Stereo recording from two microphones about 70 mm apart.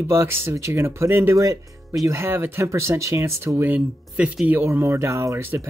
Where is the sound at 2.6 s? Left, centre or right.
Right.